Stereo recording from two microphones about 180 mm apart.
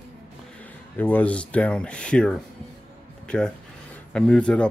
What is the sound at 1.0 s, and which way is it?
Speech, 10° left (ahead or behind).